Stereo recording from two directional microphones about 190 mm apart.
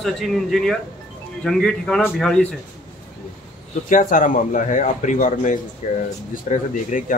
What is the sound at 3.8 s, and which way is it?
Speech, 45° left (ahead or behind).